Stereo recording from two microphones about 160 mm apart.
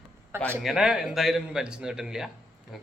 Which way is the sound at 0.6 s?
5° right (ahead or behind).